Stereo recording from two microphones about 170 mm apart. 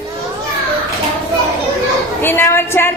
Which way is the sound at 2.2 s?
15° left (ahead or behind).